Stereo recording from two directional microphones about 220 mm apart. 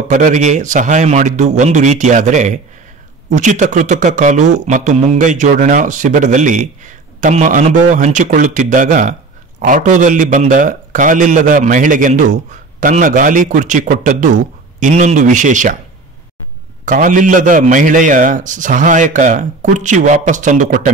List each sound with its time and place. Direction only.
0.1 s speech: 35° right (ahead or behind)
16.8 s speech: 35° right (ahead or behind)